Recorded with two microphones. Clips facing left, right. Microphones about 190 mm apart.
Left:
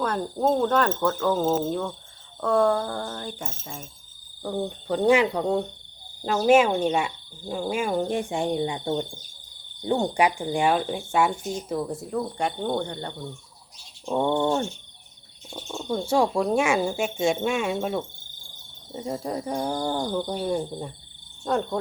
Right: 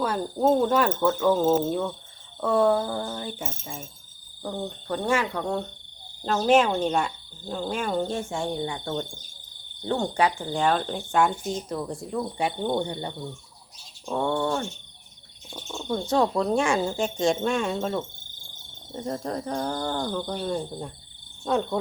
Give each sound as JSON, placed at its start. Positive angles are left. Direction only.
{"t": 0.0, "sound": "cricket", "side_deg": -5}
{"t": 4.5, "sound": "speech", "side_deg": 15}
{"t": 11.7, "sound": "cricket", "side_deg": 5}
{"t": 14.0, "sound": "speech", "side_deg": 15}
{"t": 15.4, "sound": "speech", "side_deg": 10}
{"t": 21.4, "sound": "cricket", "side_deg": 0}